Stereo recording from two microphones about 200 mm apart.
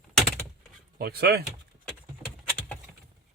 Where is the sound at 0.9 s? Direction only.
50° right (ahead or behind).